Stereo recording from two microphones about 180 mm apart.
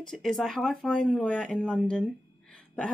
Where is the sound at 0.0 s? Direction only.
Centre (ahead or behind).